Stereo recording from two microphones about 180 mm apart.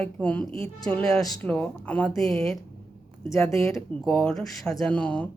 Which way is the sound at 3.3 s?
15° left (ahead or behind).